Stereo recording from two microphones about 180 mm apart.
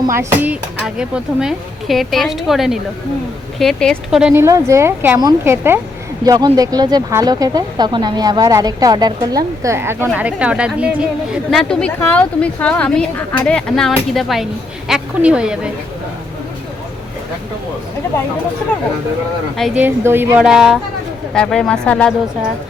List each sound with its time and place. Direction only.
0.1 s a woman's voice: 15° right (ahead or behind)
4.4 s speech: 15° right (ahead or behind)
11.5 s a woman's voice: 5° left (ahead or behind)
19.5 s a woman's voice: centre (ahead or behind)
19.8 s a woman's voice: 10° right (ahead or behind); by 22.1 s 5° left (ahead or behind)